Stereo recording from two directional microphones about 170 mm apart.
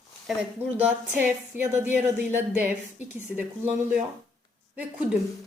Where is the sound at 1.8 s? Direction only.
10° right (ahead or behind).